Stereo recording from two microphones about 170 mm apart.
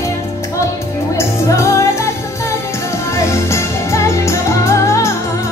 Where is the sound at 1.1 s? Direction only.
15° left (ahead or behind).